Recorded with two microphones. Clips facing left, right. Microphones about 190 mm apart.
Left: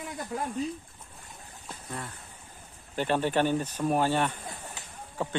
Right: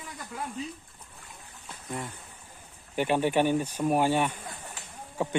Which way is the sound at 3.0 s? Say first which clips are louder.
Right 1 dB; 15° right (ahead or behind).